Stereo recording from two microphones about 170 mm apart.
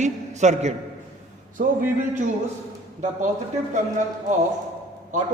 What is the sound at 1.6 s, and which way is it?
Speech, 55° right (ahead or behind).